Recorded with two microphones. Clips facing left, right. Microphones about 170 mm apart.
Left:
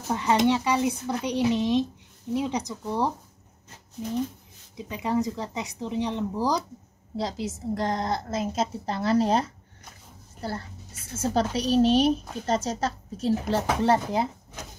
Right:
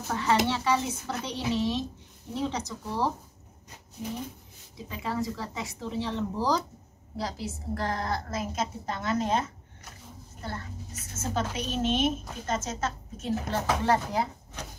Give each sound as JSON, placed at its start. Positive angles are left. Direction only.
{"t": 0.1, "sound": "speech", "side_deg": 20}
{"t": 4.7, "sound": "a woman's voice", "side_deg": 20}